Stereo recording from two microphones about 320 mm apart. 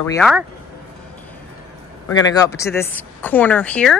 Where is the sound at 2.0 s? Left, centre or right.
Centre.